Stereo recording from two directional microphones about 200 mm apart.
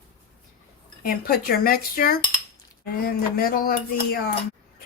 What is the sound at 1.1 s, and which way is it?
A woman's voice, 50° left (ahead or behind).